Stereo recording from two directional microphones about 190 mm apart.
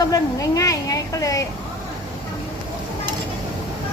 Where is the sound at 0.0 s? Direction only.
20° left (ahead or behind).